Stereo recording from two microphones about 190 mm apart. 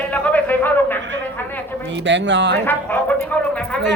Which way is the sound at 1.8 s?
70° right (ahead or behind).